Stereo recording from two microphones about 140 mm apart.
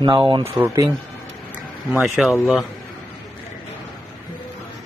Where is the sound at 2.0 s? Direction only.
Centre (ahead or behind).